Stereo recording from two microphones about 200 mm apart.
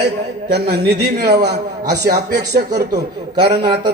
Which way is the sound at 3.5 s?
20° right (ahead or behind).